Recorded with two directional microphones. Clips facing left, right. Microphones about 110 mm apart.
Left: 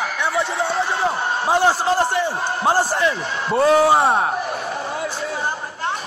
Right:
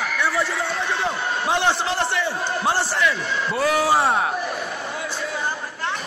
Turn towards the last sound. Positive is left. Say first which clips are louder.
# left 4 dB
turn(degrees=25)  # may be behind; listen again after turning